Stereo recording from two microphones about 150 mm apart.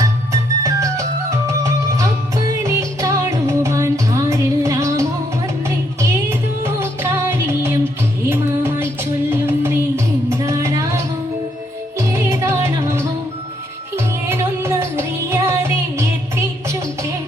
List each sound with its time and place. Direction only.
0.6 s music: 20° right (ahead or behind)